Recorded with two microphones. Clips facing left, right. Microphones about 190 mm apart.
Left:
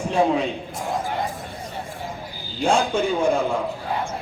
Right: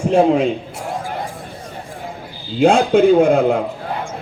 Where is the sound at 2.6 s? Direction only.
60° right (ahead or behind).